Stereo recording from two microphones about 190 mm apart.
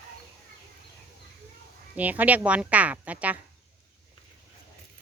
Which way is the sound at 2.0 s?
10° right (ahead or behind).